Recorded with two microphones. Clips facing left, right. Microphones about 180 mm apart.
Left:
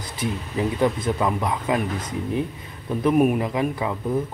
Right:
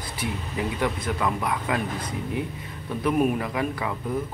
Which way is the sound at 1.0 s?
25° left (ahead or behind).